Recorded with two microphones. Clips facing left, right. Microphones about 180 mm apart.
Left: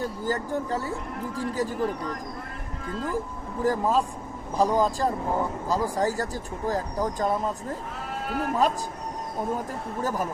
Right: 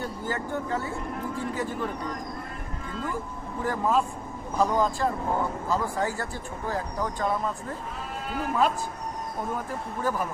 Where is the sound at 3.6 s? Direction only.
40° left (ahead or behind).